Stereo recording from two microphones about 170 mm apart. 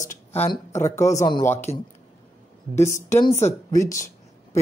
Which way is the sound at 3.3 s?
40° left (ahead or behind).